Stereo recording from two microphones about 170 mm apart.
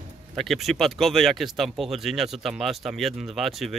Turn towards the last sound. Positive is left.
turn(degrees=0)  # may be behind; listen again after turning